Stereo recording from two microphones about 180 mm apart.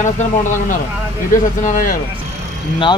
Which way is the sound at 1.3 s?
45° left (ahead or behind).